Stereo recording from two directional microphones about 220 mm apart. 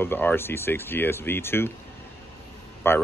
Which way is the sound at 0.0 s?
10° left (ahead or behind).